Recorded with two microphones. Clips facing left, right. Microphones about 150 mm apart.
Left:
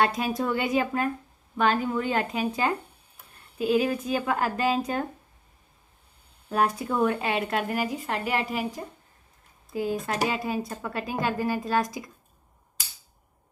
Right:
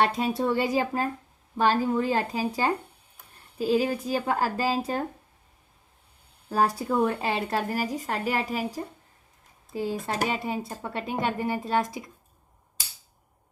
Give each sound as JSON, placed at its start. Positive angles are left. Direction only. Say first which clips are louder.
{"t": 0.0, "sound": "a woman's voice", "louder": "right 1 dB", "side_deg": -25}
{"t": 6.7, "sound": "a woman's voice", "louder": "even", "side_deg": -30}